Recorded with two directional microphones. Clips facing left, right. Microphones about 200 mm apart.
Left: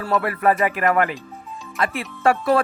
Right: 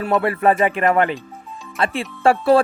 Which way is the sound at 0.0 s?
25° right (ahead or behind).